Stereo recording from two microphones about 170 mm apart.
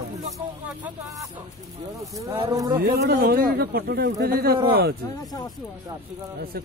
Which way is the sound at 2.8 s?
65° right (ahead or behind).